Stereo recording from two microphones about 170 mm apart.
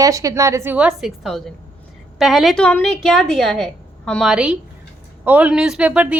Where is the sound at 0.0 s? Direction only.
20° right (ahead or behind).